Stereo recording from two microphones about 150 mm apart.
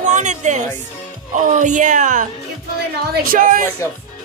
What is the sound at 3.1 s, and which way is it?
Speech, 75° right (ahead or behind).